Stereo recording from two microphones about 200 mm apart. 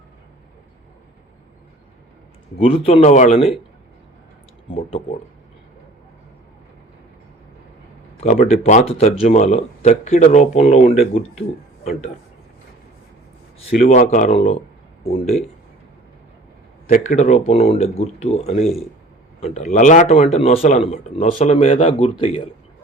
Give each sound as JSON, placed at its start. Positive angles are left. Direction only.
{"t": 2.6, "sound": "speech", "side_deg": 30}
{"t": 4.7, "sound": "speech", "side_deg": 25}
{"t": 8.2, "sound": "speech", "side_deg": 35}
{"t": 13.8, "sound": "speech", "side_deg": 40}
{"t": 16.9, "sound": "speech", "side_deg": 40}